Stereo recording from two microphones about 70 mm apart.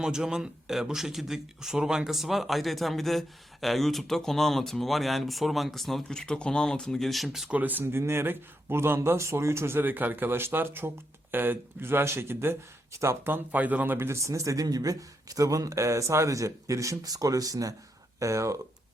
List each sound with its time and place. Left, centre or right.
0.0 s speech: centre
7.5 s speech: right
13.2 s speech: right
18.2 s speech: right